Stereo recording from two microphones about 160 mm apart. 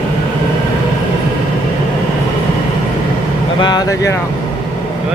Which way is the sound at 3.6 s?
25° left (ahead or behind).